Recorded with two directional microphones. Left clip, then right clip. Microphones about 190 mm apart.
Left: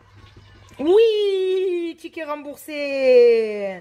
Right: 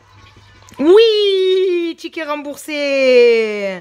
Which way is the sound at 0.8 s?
20° right (ahead or behind).